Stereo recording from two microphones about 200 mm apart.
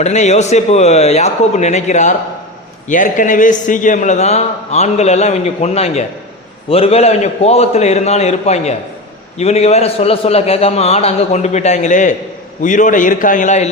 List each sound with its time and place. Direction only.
0.0 s a man's voice: 35° left (ahead or behind)